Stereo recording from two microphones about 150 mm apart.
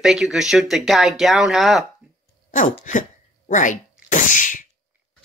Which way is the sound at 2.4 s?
60° left (ahead or behind).